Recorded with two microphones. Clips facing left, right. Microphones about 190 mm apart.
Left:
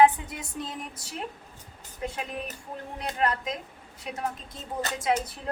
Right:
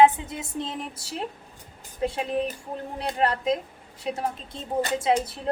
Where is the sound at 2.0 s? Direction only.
30° right (ahead or behind).